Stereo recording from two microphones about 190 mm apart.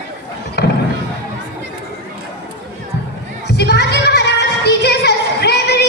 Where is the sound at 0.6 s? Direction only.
60° left (ahead or behind).